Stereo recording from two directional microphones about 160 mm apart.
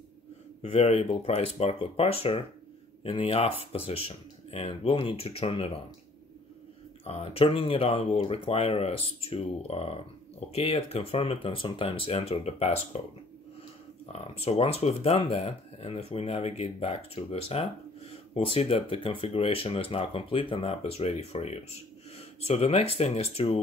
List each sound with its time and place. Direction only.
0.6 s speech: 40° left (ahead or behind)
7.1 s speech: 40° left (ahead or behind)
14.1 s speech: 40° left (ahead or behind)